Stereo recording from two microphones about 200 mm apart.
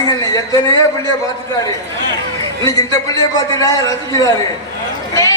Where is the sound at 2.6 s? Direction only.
15° left (ahead or behind).